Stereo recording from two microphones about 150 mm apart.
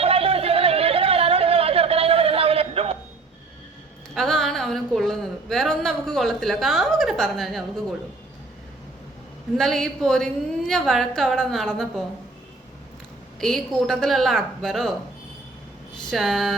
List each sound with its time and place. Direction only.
0.0 s a sound: 40° right (ahead or behind)
4.1 s speech: centre (ahead or behind)
9.6 s a woman's voice: 5° left (ahead or behind)
13.4 s a woman's voice: centre (ahead or behind)
16.0 s a woman's voice: centre (ahead or behind)